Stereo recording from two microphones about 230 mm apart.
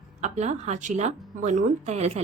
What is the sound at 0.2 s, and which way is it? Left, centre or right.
A woman's voice, right.